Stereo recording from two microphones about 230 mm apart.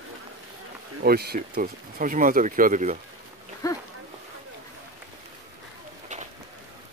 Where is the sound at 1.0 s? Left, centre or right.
Right.